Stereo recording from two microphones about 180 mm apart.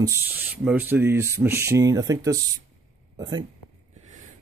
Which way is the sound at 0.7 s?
10° right (ahead or behind).